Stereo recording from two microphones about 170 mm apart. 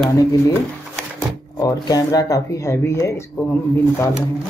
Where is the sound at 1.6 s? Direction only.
20° left (ahead or behind).